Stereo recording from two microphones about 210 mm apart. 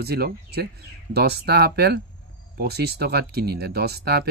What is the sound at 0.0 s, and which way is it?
Speech, 50° right (ahead or behind).